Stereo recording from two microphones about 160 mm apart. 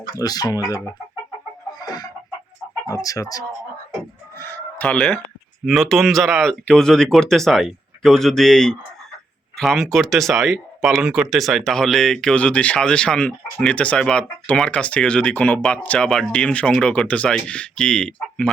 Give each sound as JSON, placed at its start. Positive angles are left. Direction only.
{"t": 0.2, "sound": "speech", "side_deg": 20}
{"t": 1.8, "sound": "chicken", "side_deg": 25}
{"t": 2.9, "sound": "speech", "side_deg": 20}